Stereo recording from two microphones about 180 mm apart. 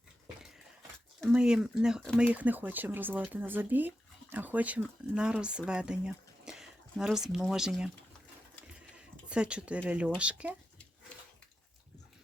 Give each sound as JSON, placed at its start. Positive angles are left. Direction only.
{"t": 1.3, "sound": "speech", "side_deg": -5}
{"t": 9.3, "sound": "speech", "side_deg": -5}